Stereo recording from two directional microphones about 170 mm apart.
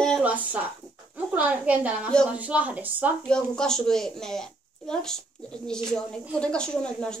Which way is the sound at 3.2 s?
5° left (ahead or behind).